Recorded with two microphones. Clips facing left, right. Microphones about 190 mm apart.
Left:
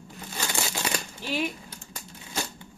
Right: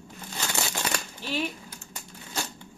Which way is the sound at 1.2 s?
10° left (ahead or behind).